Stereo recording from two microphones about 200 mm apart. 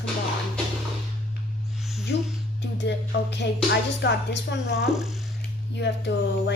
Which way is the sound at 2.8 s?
60° left (ahead or behind).